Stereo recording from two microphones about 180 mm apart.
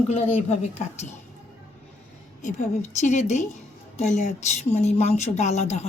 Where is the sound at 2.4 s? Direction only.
45° left (ahead or behind).